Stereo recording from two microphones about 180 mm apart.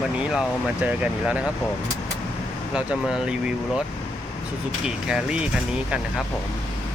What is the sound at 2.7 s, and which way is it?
Speech, 5° right (ahead or behind).